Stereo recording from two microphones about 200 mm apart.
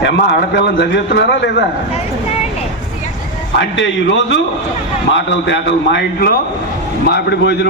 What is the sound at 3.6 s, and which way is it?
A man's voice, 65° left (ahead or behind).